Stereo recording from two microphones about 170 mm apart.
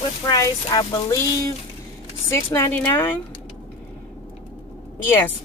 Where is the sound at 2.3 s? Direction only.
15° left (ahead or behind).